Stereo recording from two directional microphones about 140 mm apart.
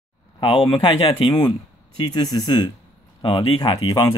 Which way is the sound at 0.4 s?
40° left (ahead or behind).